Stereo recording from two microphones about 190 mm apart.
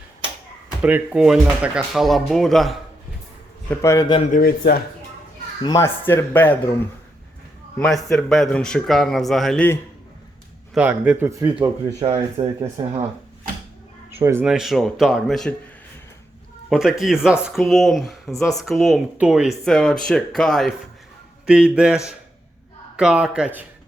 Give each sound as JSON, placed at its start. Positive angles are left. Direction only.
{"t": 0.8, "sound": "speech", "side_deg": -5}
{"t": 3.7, "sound": "speech", "side_deg": 15}
{"t": 4.3, "sound": "speech", "side_deg": 50}
{"t": 5.6, "sound": "speech", "side_deg": 15}
{"t": 7.8, "sound": "speech", "side_deg": 0}
{"t": 10.8, "sound": "speech", "side_deg": -5}
{"t": 12.0, "sound": "speech", "side_deg": -30}
{"t": 14.3, "sound": "speech", "side_deg": -10}
{"t": 16.6, "sound": "speech", "side_deg": -5}